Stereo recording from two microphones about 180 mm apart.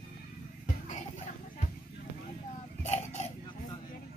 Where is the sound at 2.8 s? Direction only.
40° left (ahead or behind).